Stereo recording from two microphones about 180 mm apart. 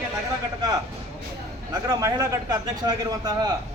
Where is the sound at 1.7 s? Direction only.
20° right (ahead or behind).